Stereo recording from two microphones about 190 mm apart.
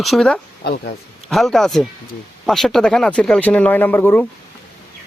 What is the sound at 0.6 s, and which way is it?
Speech, 55° left (ahead or behind).